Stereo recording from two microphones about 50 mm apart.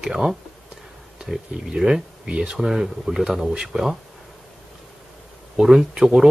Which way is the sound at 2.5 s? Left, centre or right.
Centre.